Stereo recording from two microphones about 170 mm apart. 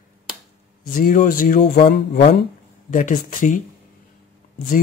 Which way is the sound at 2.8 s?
50° left (ahead or behind).